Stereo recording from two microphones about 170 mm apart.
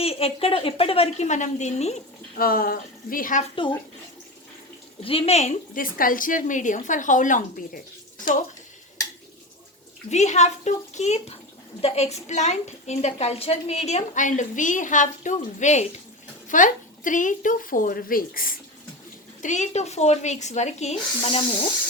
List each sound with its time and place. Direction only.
0.0 s a woman's voice: 35° left (ahead or behind)
2.3 s speech: 60° left (ahead or behind)
3.5 s a child's voice: 30° left (ahead or behind)
5.0 s a woman's voice: 35° left (ahead or behind); by 7.8 s 50° left (ahead or behind)
10.1 s a woman's voice: 45° left (ahead or behind)
19.4 s a woman's voice: 45° left (ahead or behind)